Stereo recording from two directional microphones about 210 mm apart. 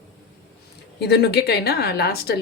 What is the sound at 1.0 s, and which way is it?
A woman's voice, 50° left (ahead or behind).